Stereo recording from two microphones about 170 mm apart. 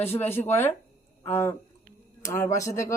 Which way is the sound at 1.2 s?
15° left (ahead or behind).